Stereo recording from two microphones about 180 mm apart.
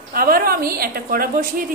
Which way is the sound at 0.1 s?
55° right (ahead or behind).